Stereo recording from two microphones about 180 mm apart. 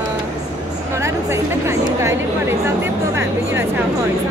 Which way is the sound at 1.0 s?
15° right (ahead or behind).